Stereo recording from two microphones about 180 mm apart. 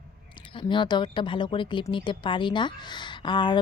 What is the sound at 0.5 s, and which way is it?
A woman's voice, 25° left (ahead or behind).